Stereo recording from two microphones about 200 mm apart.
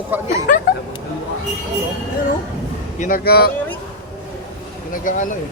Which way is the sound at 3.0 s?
45° left (ahead or behind).